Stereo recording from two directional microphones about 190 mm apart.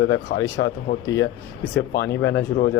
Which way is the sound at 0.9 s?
35° left (ahead or behind).